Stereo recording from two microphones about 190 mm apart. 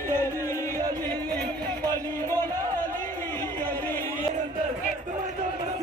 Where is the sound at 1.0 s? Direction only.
10° left (ahead or behind).